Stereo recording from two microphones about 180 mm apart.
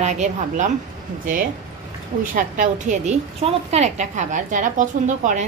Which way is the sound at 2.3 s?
45° right (ahead or behind).